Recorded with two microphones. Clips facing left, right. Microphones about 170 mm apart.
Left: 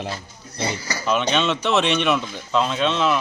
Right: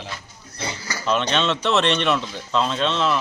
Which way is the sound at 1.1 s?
5° left (ahead or behind).